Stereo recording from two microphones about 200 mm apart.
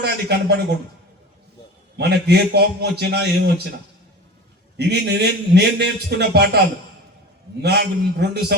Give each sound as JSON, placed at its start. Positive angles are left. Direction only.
{"t": 0.0, "sound": "a man's voice", "side_deg": -55}
{"t": 2.0, "sound": "a man's voice", "side_deg": -55}
{"t": 4.8, "sound": "a man's voice", "side_deg": -55}
{"t": 7.6, "sound": "a man's voice", "side_deg": -55}